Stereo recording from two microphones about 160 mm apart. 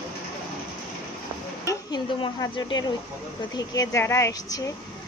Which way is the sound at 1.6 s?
25° left (ahead or behind).